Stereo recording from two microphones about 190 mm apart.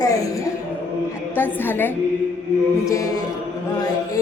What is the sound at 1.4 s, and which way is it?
A woman's voice, 10° left (ahead or behind).